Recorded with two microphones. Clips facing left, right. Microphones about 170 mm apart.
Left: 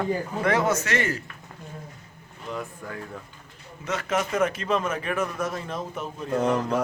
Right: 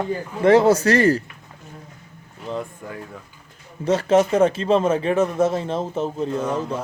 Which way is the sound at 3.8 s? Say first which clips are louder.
Right 10 dB; 30° right (ahead or behind).